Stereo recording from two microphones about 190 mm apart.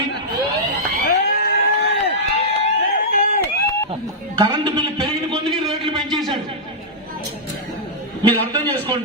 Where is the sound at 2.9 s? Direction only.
45° left (ahead or behind).